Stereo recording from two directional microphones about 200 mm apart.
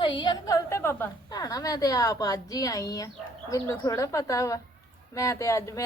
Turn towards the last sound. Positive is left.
turn(degrees=15)  # may be behind; listen again after turning